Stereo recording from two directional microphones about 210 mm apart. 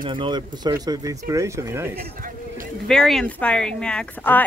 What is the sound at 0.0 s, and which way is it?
Speech, 20° right (ahead or behind).